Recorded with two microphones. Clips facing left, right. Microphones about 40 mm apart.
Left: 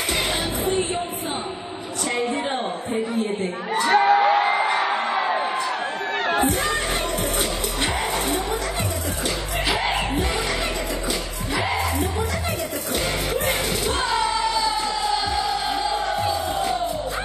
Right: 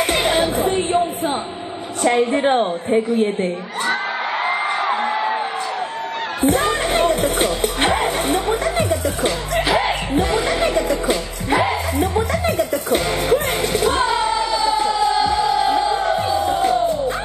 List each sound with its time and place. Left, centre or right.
0.1 s music: right
2.0 s speech: right
3.9 s music: left
4.3 s a sound: right
6.4 s music: right